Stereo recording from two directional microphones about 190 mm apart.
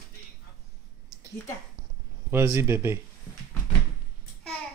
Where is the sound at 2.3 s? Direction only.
15° right (ahead or behind).